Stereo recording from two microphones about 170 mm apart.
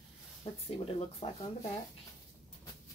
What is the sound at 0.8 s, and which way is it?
Speech, 40° left (ahead or behind).